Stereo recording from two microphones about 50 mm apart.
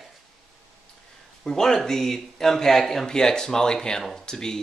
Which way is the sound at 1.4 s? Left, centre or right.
Centre.